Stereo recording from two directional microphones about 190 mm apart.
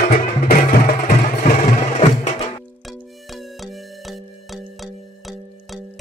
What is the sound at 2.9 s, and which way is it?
Music, centre (ahead or behind).